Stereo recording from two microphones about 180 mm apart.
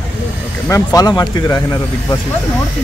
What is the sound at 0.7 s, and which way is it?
Speech, 20° left (ahead or behind).